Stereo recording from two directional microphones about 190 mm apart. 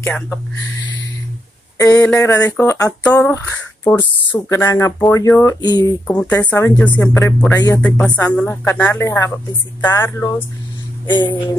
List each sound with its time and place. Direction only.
1.8 s speech: 15° left (ahead or behind)
6.0 s speech: 10° left (ahead or behind); by 11.3 s 25° left (ahead or behind)